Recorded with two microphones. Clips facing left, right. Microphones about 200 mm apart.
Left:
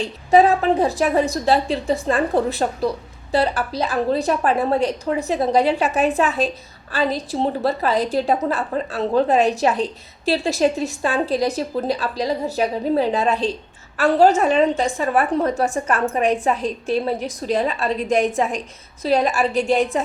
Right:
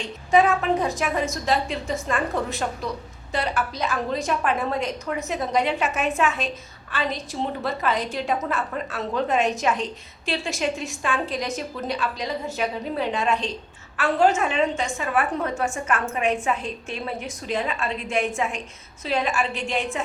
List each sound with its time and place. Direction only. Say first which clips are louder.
0.0 s a woman's voice: left 5 dB; 35° left (ahead or behind)